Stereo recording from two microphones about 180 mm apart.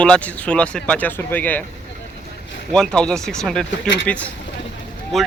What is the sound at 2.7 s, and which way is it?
Speech, 5° left (ahead or behind).